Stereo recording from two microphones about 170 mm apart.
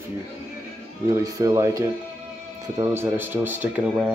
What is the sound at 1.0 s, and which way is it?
Speech, 20° right (ahead or behind).